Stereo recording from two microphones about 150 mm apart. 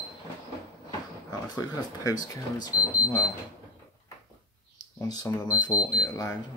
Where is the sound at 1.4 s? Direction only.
25° left (ahead or behind).